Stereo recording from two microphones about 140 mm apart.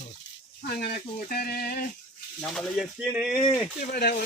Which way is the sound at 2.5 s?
5° left (ahead or behind).